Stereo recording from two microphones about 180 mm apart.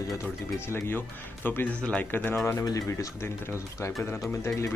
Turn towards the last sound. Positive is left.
turn(degrees=15)  # may be behind; listen again after turning